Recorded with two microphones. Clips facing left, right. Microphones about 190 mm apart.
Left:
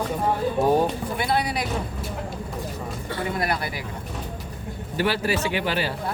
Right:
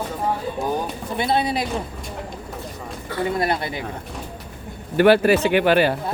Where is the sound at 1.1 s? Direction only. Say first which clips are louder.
Right 3 dB; 25° right (ahead or behind).